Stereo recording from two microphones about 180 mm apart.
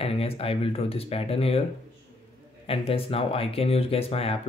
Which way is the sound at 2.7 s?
30° left (ahead or behind).